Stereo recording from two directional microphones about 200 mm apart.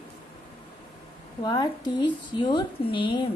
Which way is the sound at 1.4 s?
20° left (ahead or behind).